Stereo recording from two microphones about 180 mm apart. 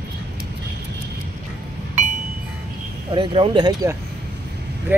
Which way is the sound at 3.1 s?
30° right (ahead or behind).